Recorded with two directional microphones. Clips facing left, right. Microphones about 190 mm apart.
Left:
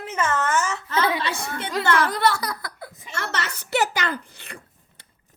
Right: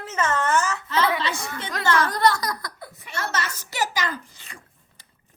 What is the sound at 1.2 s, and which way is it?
Speech, 55° left (ahead or behind).